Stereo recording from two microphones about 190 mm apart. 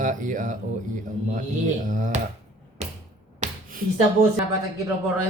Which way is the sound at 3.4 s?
35° right (ahead or behind).